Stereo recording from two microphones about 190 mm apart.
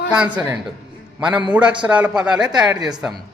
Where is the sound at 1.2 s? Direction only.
25° right (ahead or behind).